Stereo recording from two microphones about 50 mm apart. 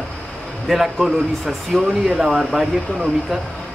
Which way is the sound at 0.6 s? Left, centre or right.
Centre.